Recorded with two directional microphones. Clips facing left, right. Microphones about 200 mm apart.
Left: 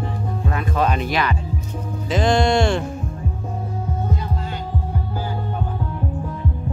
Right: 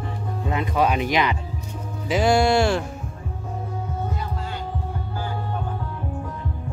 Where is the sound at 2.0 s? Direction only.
10° right (ahead or behind).